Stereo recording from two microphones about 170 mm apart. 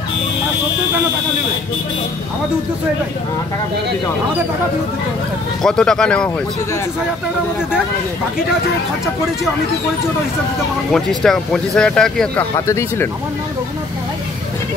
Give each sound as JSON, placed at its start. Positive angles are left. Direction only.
{"t": 5.6, "sound": "speech", "side_deg": 5}
{"t": 10.9, "sound": "speech", "side_deg": 0}
{"t": 12.5, "sound": "speech", "side_deg": 15}